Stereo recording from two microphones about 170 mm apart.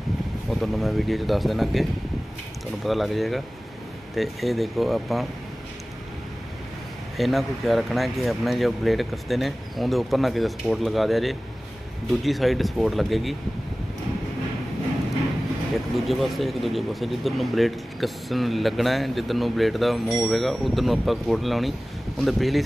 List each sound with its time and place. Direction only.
0.5 s speech: centre (ahead or behind)
7.2 s speech: centre (ahead or behind)
15.7 s speech: centre (ahead or behind)